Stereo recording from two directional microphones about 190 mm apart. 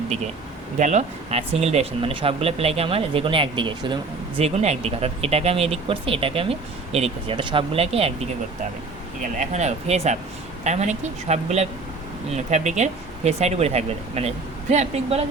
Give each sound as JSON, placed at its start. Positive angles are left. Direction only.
{"t": 0.8, "sound": "speech", "side_deg": -40}
{"t": 9.4, "sound": "speech", "side_deg": -35}